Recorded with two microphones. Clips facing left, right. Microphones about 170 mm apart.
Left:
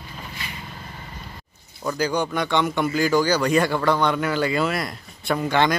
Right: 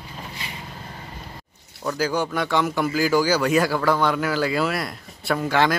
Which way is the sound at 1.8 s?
5° right (ahead or behind).